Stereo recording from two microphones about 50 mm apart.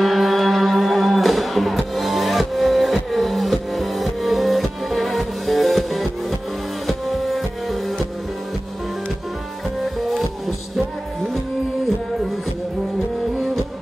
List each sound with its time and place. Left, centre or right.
0.0 s music: centre